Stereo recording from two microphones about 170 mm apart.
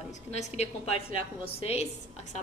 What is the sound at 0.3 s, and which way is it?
A woman's voice, 40° left (ahead or behind).